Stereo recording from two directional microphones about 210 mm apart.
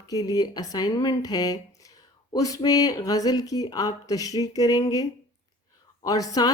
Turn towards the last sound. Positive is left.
turn(degrees=15)  # may be behind; listen again after turning